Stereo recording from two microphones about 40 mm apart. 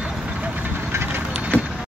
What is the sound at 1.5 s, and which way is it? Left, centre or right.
Vehicle, left.